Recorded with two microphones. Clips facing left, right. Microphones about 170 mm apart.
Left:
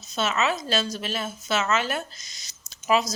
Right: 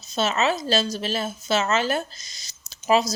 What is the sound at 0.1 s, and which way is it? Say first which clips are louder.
Speech: right 3 dB; 30° right (ahead or behind).